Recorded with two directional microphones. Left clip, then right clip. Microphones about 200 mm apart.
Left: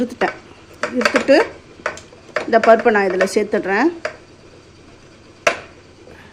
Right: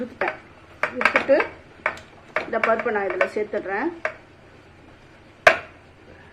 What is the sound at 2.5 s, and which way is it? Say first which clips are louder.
Speech: left 11 dB; 55° left (ahead or behind).